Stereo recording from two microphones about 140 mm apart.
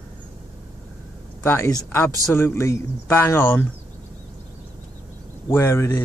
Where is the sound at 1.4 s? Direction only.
20° left (ahead or behind).